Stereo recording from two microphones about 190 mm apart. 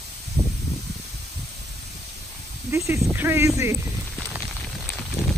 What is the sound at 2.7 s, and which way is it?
Speech, 15° right (ahead or behind).